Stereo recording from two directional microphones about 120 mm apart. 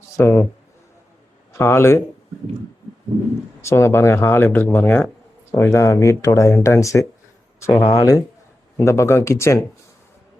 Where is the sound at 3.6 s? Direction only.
20° left (ahead or behind).